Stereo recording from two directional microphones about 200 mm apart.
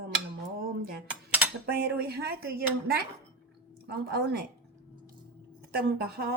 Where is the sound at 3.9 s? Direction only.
50° right (ahead or behind).